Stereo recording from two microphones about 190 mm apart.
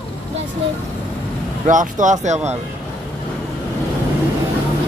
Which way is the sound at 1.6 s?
40° right (ahead or behind).